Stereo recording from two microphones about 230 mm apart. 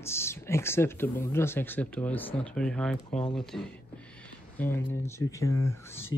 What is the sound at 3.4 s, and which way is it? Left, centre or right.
Speech, centre.